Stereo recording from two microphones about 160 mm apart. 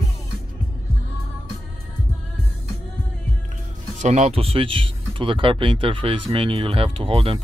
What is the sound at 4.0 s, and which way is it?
Speech, 45° right (ahead or behind).